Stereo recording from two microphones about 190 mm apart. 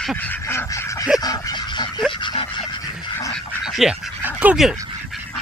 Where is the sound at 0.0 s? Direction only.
5° left (ahead or behind); by 2.6 s 25° left (ahead or behind).